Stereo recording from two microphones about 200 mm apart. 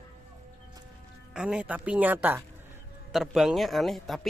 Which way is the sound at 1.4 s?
5° right (ahead or behind).